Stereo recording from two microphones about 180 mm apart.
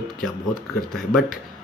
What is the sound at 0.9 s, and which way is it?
Speech, centre (ahead or behind).